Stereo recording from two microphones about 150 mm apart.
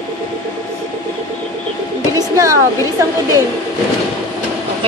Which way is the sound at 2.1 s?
20° right (ahead or behind).